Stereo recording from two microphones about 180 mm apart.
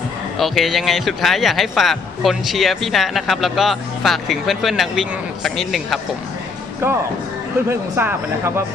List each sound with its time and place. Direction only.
0.3 s speech: centre (ahead or behind)
6.8 s a man's voice: 15° right (ahead or behind)